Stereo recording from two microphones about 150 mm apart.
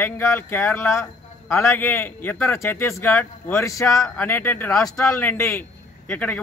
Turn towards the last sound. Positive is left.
turn(degrees=10)  # may be behind; listen again after turning